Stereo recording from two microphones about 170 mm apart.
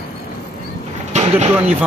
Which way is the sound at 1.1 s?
40° right (ahead or behind).